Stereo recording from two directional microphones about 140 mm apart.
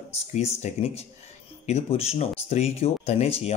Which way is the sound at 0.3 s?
50° left (ahead or behind).